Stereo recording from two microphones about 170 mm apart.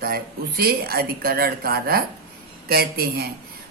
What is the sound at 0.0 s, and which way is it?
A woman's voice, 65° right (ahead or behind).